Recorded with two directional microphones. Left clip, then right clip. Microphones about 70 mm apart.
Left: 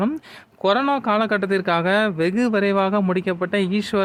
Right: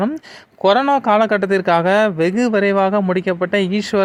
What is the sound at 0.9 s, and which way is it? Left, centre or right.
Speech, right.